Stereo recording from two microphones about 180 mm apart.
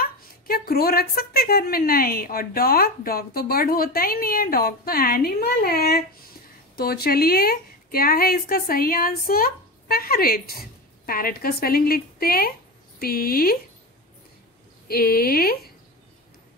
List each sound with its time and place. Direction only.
0.0 s a woman's voice: 55° left (ahead or behind)
14.9 s a woman's voice: 60° left (ahead or behind)